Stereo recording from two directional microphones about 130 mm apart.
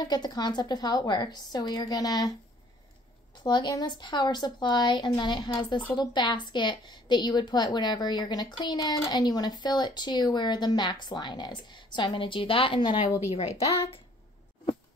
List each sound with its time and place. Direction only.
0.0 s a woman's voice: 35° left (ahead or behind)
3.4 s a woman's voice: 35° left (ahead or behind)
13.3 s speech: 55° left (ahead or behind)